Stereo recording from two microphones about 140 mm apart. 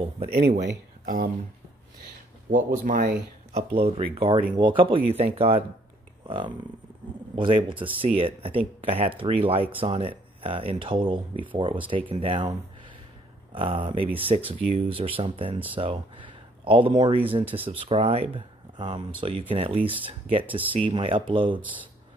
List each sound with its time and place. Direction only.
0.3 s speech: 75° right (ahead or behind)
2.5 s speech: 70° right (ahead or behind)
3.5 s speech: 45° right (ahead or behind)